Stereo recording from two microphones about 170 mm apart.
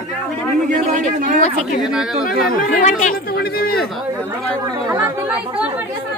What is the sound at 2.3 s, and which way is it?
Speech, 55° left (ahead or behind).